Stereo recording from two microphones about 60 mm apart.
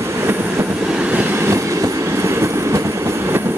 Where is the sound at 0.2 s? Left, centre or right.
Right.